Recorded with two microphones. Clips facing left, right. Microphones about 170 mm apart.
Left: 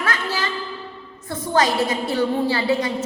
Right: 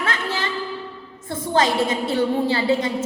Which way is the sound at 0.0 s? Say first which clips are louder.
Even; 25° right (ahead or behind).